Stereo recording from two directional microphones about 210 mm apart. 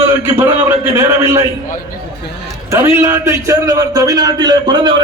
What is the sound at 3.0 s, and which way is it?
A man's voice, 10° right (ahead or behind).